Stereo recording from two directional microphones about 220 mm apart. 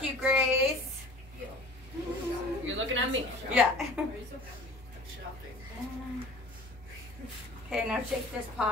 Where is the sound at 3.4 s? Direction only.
5° right (ahead or behind).